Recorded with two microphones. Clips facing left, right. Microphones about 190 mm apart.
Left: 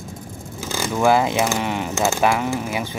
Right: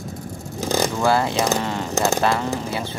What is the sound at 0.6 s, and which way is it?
Vehicle, 40° right (ahead or behind).